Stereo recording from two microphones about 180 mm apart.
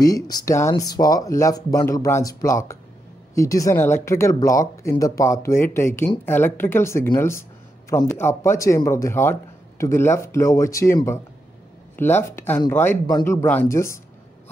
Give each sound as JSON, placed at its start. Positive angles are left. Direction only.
{"t": 0.0, "sound": "speech", "side_deg": 20}